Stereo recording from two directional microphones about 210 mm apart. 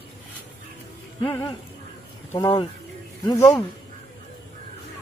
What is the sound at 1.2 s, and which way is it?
Speech, 15° left (ahead or behind).